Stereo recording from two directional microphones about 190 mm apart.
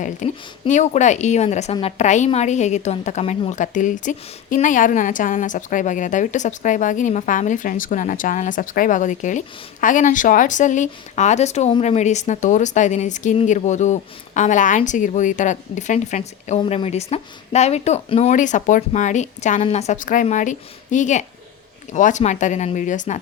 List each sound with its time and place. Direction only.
0.2 s a woman's voice: 40° left (ahead or behind)